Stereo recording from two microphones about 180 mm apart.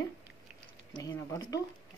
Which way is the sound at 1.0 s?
20° left (ahead or behind).